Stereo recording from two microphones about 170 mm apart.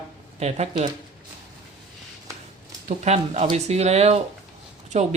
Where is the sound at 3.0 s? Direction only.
40° right (ahead or behind).